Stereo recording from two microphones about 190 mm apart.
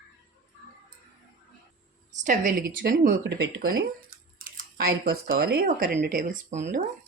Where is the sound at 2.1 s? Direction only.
40° right (ahead or behind).